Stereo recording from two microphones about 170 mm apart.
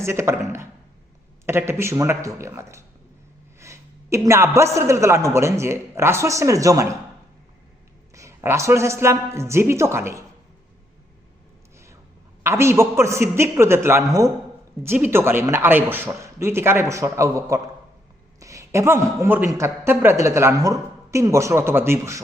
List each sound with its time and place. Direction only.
0.0 s a man's voice: 15° right (ahead or behind)
8.1 s a man's voice: 15° right (ahead or behind)
12.4 s a man's voice: 15° right (ahead or behind)